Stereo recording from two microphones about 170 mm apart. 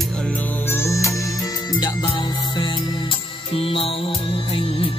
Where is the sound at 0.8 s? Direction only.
15° left (ahead or behind).